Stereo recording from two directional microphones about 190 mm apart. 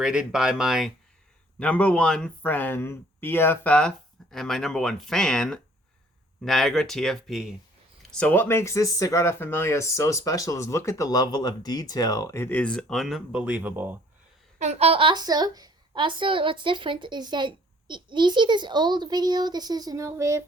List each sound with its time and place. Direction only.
0.0 s speech: 5° right (ahead or behind)
8.2 s speech: 10° left (ahead or behind); by 14.0 s 10° right (ahead or behind)
14.6 s a woman's voice: 35° right (ahead or behind); by 20.4 s 15° right (ahead or behind)